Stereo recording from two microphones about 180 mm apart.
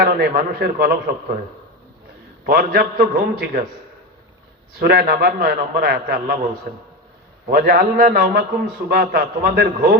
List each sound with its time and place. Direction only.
0.0 s a man's voice: 60° right (ahead or behind)
2.5 s a man's voice: 55° right (ahead or behind)
4.8 s a man's voice: 60° right (ahead or behind)
7.5 s a man's voice: 55° right (ahead or behind)